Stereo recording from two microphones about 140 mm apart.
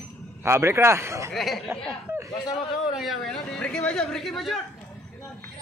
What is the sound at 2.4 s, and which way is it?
Speech, 30° left (ahead or behind).